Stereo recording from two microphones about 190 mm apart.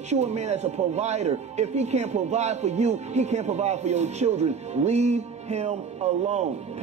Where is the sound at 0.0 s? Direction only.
35° right (ahead or behind).